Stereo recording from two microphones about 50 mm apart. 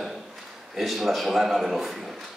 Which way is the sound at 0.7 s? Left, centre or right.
Centre.